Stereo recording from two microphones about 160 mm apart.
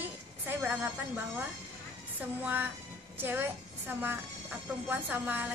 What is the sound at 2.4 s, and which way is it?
A woman's voice, 10° right (ahead or behind).